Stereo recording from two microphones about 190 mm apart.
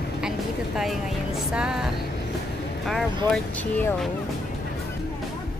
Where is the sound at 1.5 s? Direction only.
5° right (ahead or behind).